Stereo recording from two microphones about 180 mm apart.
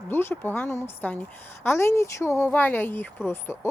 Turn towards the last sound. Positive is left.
turn(degrees=10)  # may be behind; listen again after turning